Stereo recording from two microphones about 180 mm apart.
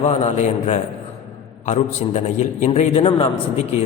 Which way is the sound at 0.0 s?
35° left (ahead or behind).